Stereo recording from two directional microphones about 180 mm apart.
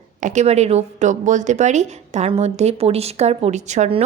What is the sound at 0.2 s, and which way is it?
A woman's voice, 40° right (ahead or behind).